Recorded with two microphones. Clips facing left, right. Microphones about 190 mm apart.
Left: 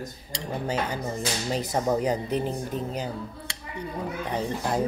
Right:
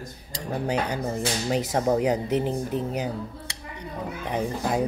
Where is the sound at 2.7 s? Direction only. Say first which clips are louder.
Right 3 dB; 70° right (ahead or behind).